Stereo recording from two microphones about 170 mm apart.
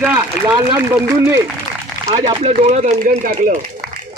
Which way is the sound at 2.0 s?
25° right (ahead or behind).